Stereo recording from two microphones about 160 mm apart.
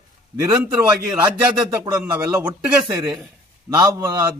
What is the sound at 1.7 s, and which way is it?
Speech, 20° right (ahead or behind).